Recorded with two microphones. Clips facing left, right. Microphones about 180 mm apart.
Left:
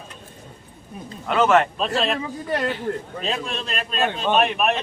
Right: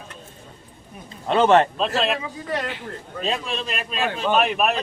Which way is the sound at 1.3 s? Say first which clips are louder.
Right 2 dB; 30° right (ahead or behind).